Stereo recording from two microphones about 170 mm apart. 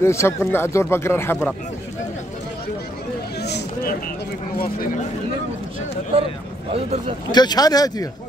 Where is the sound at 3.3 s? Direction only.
75° left (ahead or behind); by 4.9 s 55° left (ahead or behind).